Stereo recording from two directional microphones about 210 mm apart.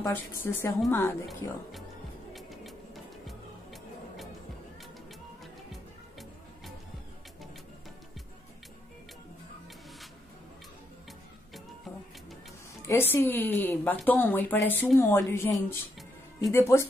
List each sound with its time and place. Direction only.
0.0 s a woman's voice: 10° left (ahead or behind)
1.4 s speech: 65° left (ahead or behind)
2.3 s music: centre (ahead or behind)
12.8 s a woman's voice: 10° left (ahead or behind)
16.5 s a woman's voice: 15° left (ahead or behind)